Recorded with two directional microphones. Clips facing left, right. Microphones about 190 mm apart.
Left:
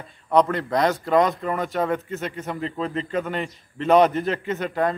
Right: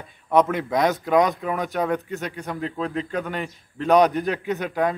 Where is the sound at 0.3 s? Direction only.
5° right (ahead or behind).